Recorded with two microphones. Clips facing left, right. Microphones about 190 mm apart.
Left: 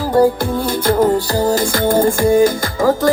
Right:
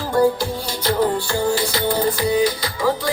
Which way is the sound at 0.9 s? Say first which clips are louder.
Left 4 dB; 45° left (ahead or behind).